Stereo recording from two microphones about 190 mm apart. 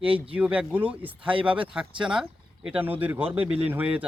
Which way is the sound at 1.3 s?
25° right (ahead or behind).